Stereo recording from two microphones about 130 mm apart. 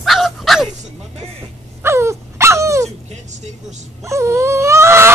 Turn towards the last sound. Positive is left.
turn(degrees=-20)  # may be behind; listen again after turning